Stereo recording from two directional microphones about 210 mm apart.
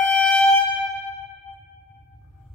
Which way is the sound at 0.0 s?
5° left (ahead or behind).